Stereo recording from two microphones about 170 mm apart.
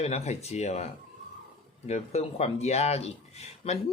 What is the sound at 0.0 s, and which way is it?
Speech, 40° left (ahead or behind).